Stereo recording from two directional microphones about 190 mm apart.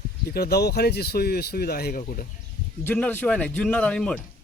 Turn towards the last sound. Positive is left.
turn(degrees=5)  # may be behind; listen again after turning